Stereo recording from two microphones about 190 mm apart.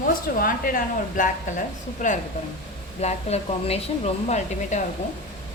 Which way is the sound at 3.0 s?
35° left (ahead or behind).